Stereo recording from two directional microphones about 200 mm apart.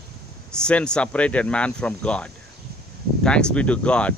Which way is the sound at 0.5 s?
5° left (ahead or behind).